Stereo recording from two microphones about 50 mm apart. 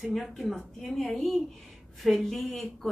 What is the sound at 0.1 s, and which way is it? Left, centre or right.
A woman's voice, centre.